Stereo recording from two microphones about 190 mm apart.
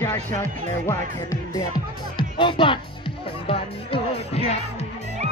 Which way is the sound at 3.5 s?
30° left (ahead or behind).